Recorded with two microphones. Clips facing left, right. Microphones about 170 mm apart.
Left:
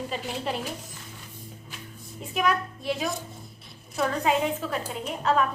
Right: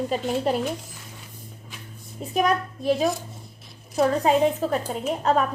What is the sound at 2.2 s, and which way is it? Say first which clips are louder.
A woman's voice: right 4 dB; 40° right (ahead or behind).